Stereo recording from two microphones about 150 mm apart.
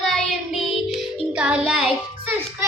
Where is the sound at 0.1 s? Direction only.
Centre (ahead or behind).